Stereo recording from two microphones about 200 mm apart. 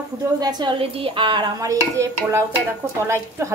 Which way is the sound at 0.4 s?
20° right (ahead or behind).